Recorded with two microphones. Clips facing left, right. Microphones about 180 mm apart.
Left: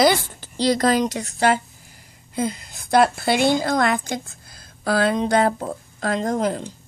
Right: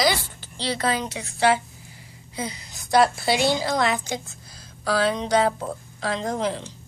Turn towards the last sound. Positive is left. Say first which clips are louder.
# left 4 dB
turn(degrees=50)  # may be behind; listen again after turning